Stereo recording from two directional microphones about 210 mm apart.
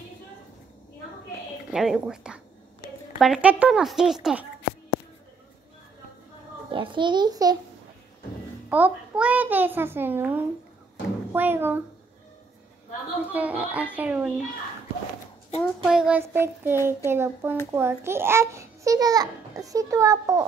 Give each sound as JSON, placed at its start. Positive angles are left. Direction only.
{"t": 1.7, "sound": "speech", "side_deg": -5}
{"t": 6.7, "sound": "a child's voice", "side_deg": -25}
{"t": 8.6, "sound": "a child's voice", "side_deg": -5}
{"t": 13.3, "sound": "a child's voice", "side_deg": -5}
{"t": 15.6, "sound": "a child's voice", "side_deg": 0}